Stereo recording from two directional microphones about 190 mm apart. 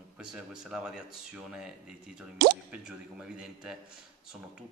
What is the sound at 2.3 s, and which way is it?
Speech, 60° right (ahead or behind).